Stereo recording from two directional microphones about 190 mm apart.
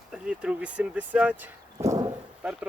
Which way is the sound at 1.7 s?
20° right (ahead or behind).